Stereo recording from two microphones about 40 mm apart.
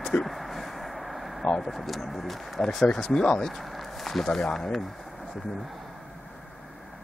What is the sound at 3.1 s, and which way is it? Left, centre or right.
Speech, centre.